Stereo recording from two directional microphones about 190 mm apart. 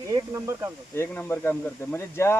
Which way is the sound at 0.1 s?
15° right (ahead or behind).